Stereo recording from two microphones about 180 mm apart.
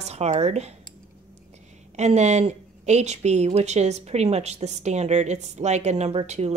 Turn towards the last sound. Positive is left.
turn(degrees=-35)  # may be behind; listen again after turning